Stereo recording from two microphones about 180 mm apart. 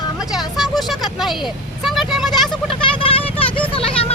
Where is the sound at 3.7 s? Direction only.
30° left (ahead or behind).